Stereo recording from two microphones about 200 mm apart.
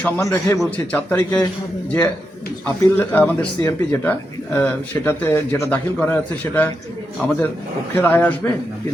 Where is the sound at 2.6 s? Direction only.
10° left (ahead or behind).